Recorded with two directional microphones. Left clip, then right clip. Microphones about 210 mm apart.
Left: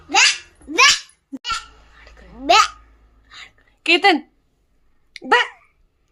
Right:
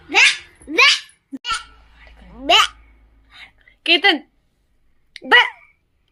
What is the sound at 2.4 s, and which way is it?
Babbling, 10° left (ahead or behind).